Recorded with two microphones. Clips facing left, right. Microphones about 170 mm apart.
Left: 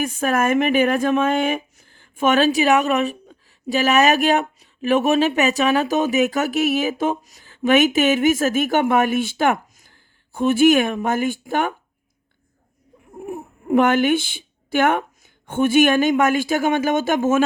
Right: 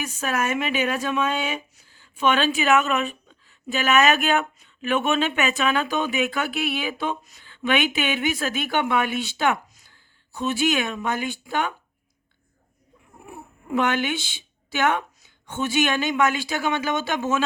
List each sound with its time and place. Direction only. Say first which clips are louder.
0.0 s speech: left 6 dB; 50° left (ahead or behind)
13.1 s speech: left 11 dB; 45° left (ahead or behind)